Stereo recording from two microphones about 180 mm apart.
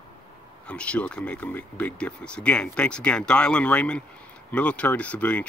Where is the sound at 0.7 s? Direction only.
5° left (ahead or behind).